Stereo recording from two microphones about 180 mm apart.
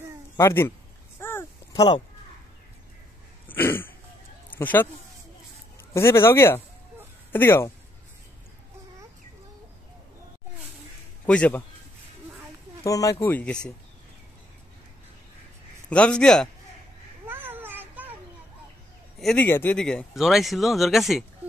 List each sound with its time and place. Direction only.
0.4 s speech: 15° left (ahead or behind)
1.2 s a sound: 15° left (ahead or behind)
3.4 s throat clearing: 10° left (ahead or behind)
4.5 s a sound: 10° left (ahead or behind)
5.9 s speech: 15° left (ahead or behind)
11.2 s speech: 5° left (ahead or behind)
12.8 s speech: 20° left (ahead or behind)
15.9 s speech: 5° left (ahead or behind)
17.3 s a sound: 10° right (ahead or behind)
19.1 s speech: 5° left (ahead or behind)